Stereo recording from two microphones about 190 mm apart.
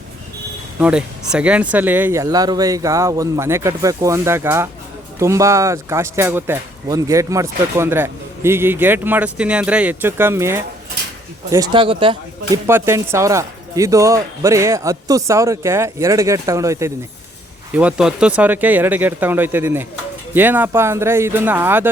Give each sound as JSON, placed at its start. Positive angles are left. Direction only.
{"t": 0.8, "sound": "speech", "side_deg": -5}
{"t": 12.6, "sound": "speech", "side_deg": -15}